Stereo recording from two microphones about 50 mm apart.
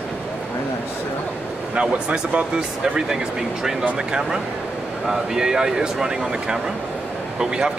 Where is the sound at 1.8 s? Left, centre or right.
Right.